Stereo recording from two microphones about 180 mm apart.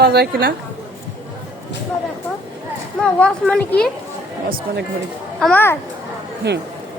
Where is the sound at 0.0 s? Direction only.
65° right (ahead or behind).